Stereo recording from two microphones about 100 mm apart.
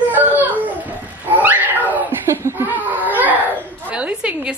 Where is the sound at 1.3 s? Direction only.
15° right (ahead or behind).